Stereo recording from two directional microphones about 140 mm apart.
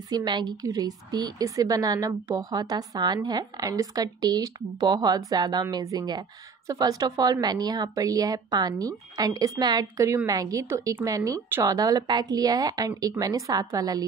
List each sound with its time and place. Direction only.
0.1 s a woman's voice: 30° right (ahead or behind)